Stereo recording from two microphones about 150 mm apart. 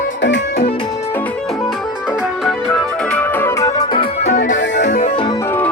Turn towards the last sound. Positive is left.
turn(degrees=55)  # may be behind; listen again after turning